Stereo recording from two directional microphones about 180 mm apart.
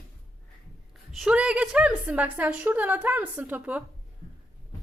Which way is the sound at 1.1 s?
5° right (ahead or behind).